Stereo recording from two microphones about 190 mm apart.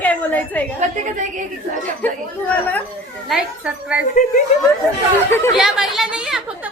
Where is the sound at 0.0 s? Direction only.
10° left (ahead or behind).